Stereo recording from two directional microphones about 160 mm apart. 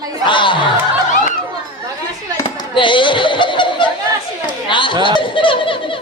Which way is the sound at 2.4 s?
30° left (ahead or behind).